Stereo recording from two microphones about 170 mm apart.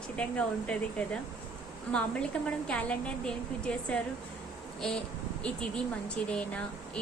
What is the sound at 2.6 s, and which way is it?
A woman's voice, 5° left (ahead or behind).